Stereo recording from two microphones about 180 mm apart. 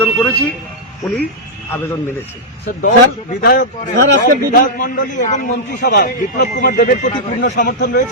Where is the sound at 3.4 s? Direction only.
55° left (ahead or behind).